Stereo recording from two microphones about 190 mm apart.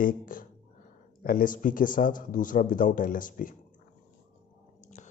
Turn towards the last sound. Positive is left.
turn(degrees=40)  # may be behind; listen again after turning